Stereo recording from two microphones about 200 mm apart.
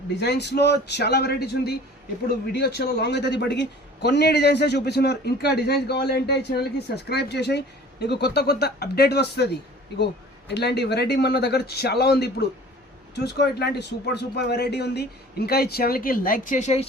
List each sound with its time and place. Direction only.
0.2 s a man's voice: 55° left (ahead or behind)
10.5 s a man's voice: 55° left (ahead or behind); by 16.8 s 35° left (ahead or behind)